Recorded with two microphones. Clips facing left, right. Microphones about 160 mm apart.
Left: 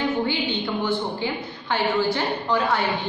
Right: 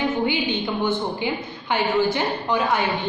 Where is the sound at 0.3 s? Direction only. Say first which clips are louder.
Right 1 dB; 20° right (ahead or behind).